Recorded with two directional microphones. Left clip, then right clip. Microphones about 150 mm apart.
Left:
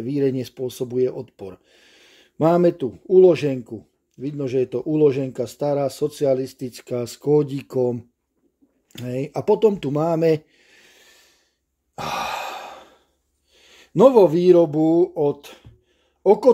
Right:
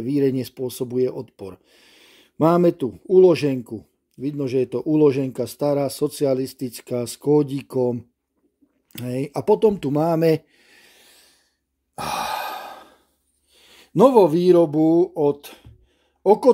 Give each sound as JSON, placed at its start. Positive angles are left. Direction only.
{"t": 0.0, "sound": "speech", "side_deg": -35}
{"t": 11.9, "sound": "sigh", "side_deg": -30}
{"t": 13.5, "sound": "speech", "side_deg": -30}
{"t": 15.4, "sound": "music", "side_deg": -30}
{"t": 16.2, "sound": "speech", "side_deg": -25}